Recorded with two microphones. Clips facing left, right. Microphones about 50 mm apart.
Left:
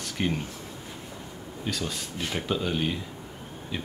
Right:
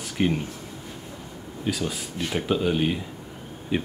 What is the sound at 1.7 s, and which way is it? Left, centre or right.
Speech, centre.